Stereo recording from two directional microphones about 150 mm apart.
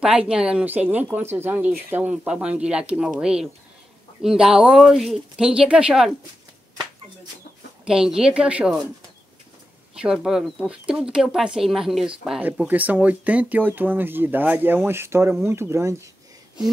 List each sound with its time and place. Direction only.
0.0 s speech: 5° right (ahead or behind)
7.8 s speech: 5° right (ahead or behind)
9.9 s speech: 5° right (ahead or behind)